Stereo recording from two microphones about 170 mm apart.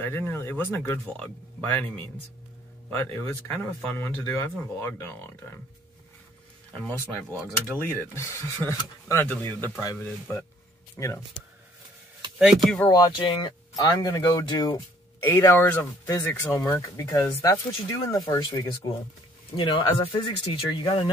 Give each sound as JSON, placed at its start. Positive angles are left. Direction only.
{"t": 0.0, "sound": "speech", "side_deg": 15}
{"t": 6.7, "sound": "speech", "side_deg": 10}
{"t": 9.9, "sound": "speech", "side_deg": 10}
{"t": 12.4, "sound": "speech", "side_deg": -5}
{"t": 12.8, "sound": "speech", "side_deg": 25}
{"t": 15.2, "sound": "speech", "side_deg": 15}